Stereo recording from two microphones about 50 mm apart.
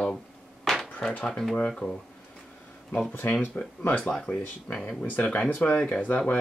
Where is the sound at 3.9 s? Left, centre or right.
Centre.